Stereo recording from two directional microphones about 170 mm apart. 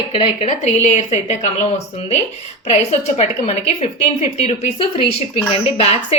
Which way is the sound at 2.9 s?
40° left (ahead or behind).